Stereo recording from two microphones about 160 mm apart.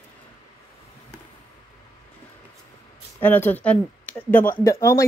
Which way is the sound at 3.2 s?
10° left (ahead or behind).